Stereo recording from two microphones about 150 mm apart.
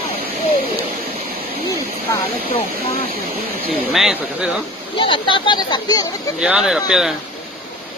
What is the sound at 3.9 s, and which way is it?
Speech, 5° right (ahead or behind).